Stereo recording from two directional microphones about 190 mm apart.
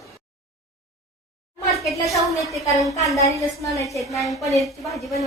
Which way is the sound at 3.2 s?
15° left (ahead or behind).